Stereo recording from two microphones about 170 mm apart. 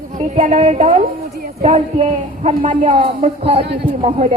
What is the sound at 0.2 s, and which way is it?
A woman's voice, 45° right (ahead or behind).